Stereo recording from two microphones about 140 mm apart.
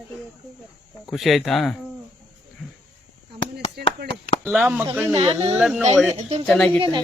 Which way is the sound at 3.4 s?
40° left (ahead or behind).